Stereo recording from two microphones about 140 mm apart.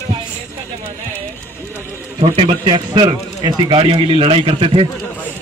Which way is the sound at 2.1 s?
35° right (ahead or behind).